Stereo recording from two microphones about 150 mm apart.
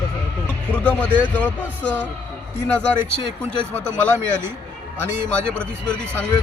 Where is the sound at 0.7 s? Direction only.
10° left (ahead or behind).